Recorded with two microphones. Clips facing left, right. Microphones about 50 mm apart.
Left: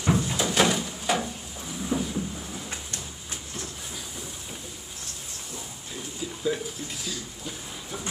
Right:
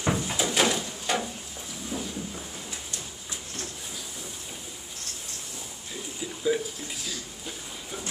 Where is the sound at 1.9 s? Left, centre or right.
Left.